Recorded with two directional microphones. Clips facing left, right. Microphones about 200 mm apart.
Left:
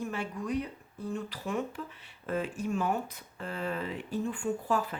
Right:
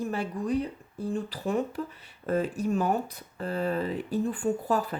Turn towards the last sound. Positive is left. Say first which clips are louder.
# right 4 dB
turn(degrees=-40)  # may be behind; listen again after turning